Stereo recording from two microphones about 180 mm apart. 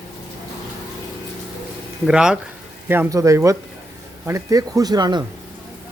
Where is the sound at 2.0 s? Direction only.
5° right (ahead or behind).